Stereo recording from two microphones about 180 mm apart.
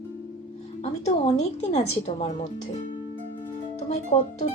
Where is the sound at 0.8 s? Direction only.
40° left (ahead or behind).